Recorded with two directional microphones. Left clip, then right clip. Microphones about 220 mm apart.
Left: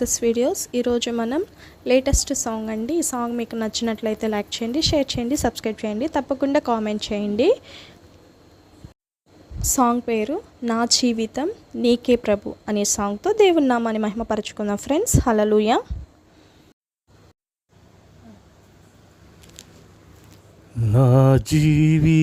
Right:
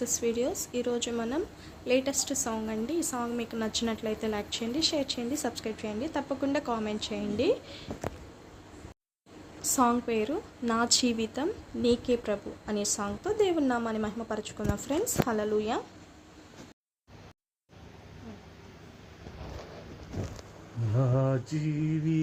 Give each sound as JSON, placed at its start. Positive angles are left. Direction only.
{"t": 0.0, "sound": "a woman's voice", "side_deg": 35}
{"t": 9.6, "sound": "a woman's voice", "side_deg": 35}
{"t": 20.9, "sound": "mantra", "side_deg": 50}